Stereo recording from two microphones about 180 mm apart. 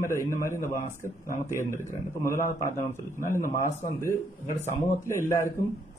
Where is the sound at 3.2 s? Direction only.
45° left (ahead or behind).